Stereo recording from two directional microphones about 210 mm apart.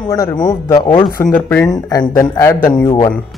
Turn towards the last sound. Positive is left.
turn(degrees=25)  # may be behind; listen again after turning